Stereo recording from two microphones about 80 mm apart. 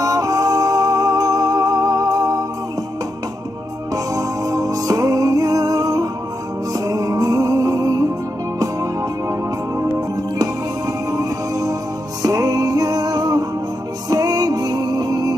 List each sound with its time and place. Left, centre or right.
0.0 s music: right
3.9 s music: right
9.3 s music: right